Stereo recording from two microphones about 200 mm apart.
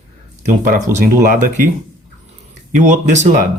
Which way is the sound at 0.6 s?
45° right (ahead or behind).